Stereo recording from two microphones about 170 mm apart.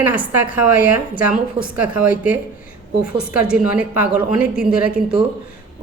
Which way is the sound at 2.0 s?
10° right (ahead or behind).